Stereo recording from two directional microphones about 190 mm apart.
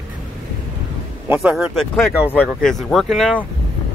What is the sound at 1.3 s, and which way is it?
Speech, centre (ahead or behind).